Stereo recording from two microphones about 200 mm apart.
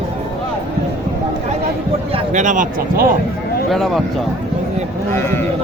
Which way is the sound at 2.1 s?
35° right (ahead or behind).